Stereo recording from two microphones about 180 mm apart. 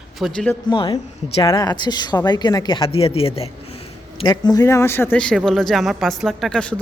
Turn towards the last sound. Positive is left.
turn(degrees=5)  # may be behind; listen again after turning